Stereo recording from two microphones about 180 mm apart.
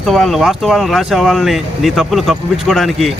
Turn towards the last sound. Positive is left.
turn(degrees=0)  # may be behind; listen again after turning